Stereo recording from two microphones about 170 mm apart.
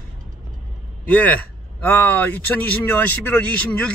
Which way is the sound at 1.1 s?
10° left (ahead or behind).